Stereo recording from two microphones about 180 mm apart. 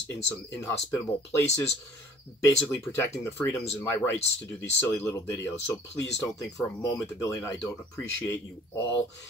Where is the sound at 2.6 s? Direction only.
15° left (ahead or behind).